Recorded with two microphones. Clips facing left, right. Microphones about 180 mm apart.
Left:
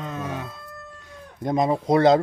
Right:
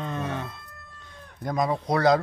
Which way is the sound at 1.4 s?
25° left (ahead or behind).